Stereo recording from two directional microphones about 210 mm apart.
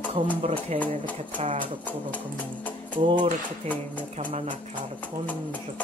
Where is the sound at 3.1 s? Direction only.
35° right (ahead or behind).